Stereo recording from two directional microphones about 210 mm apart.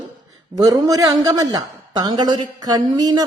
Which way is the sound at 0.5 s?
15° right (ahead or behind).